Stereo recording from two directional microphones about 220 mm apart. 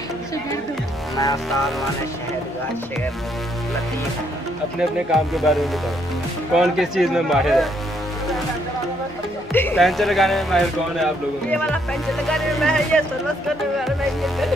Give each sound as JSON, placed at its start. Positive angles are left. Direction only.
{"t": 1.1, "sound": "music", "side_deg": 15}
{"t": 5.3, "sound": "a man's voice", "side_deg": 0}
{"t": 9.5, "sound": "a man's voice", "side_deg": 10}